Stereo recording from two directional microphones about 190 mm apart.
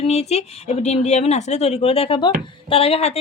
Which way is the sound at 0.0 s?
35° left (ahead or behind).